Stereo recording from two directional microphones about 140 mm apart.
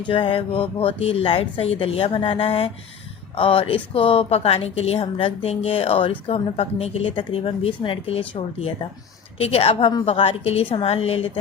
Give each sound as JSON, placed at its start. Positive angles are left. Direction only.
{"t": 0.1, "sound": "a woman's voice", "side_deg": 40}